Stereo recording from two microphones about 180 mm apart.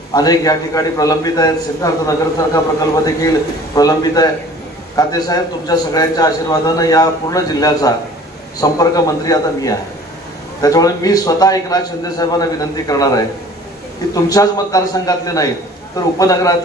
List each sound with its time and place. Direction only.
0.1 s a man's voice: 20° left (ahead or behind)